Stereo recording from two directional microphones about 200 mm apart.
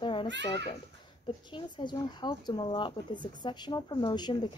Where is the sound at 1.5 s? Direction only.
20° left (ahead or behind).